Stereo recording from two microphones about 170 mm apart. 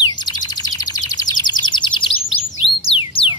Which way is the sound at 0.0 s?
25° left (ahead or behind).